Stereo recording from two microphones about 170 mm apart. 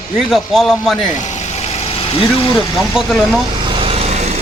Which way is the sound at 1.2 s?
40° left (ahead or behind).